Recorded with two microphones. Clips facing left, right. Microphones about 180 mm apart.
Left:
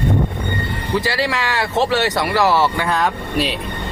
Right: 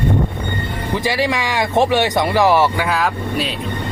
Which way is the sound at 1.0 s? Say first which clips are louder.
Right 2 dB; 15° right (ahead or behind).